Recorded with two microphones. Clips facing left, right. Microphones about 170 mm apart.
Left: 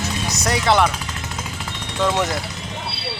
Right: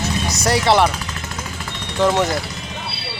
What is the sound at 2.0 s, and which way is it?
Speech, 15° right (ahead or behind).